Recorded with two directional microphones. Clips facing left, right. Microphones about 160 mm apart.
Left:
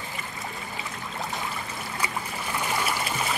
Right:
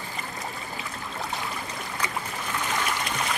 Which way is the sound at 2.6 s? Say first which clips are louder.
Left 1 dB; 10° left (ahead or behind).